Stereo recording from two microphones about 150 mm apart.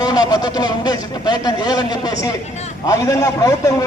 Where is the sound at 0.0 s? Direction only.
25° left (ahead or behind).